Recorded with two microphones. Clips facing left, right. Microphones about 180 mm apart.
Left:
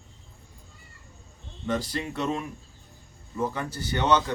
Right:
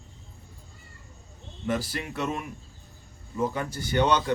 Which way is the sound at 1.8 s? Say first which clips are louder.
Left 2 dB; 25° left (ahead or behind).